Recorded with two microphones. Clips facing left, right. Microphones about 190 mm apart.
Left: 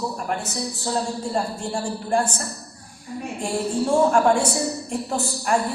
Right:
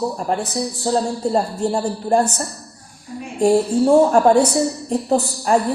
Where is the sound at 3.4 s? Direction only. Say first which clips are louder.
Right 10 dB; 40° right (ahead or behind).